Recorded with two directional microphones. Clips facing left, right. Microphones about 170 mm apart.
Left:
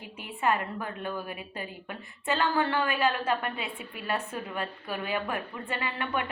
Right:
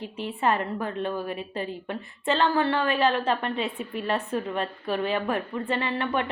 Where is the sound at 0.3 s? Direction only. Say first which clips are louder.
Right 2 dB; 35° right (ahead or behind).